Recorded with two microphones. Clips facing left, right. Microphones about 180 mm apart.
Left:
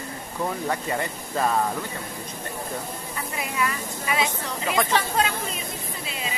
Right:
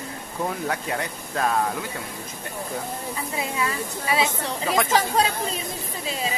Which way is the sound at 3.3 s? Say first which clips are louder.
Even; 30° right (ahead or behind).